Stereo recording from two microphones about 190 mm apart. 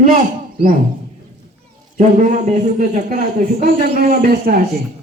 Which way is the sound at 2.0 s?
40° right (ahead or behind).